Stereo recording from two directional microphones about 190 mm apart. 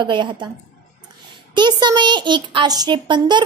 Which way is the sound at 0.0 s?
25° right (ahead or behind).